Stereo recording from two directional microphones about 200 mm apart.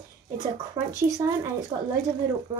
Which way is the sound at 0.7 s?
15° right (ahead or behind).